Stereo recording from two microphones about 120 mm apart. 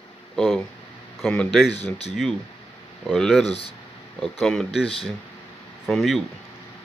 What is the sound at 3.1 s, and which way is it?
Speech, centre (ahead or behind).